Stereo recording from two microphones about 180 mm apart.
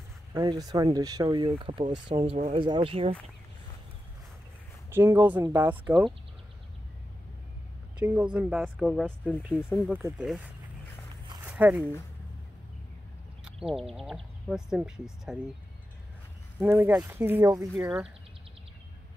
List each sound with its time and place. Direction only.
0.3 s speech: 20° right (ahead or behind)
4.8 s speech: 15° right (ahead or behind)
8.0 s speech: 5° right (ahead or behind)
11.4 s a sound: 5° right (ahead or behind)
13.7 s speech: centre (ahead or behind)
16.5 s speech: 10° right (ahead or behind)